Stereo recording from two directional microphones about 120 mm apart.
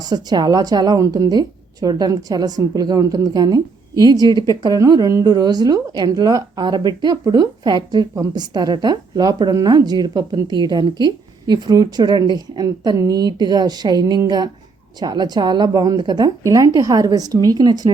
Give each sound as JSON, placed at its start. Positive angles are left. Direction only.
{"t": 0.0, "sound": "a woman's voice", "side_deg": -35}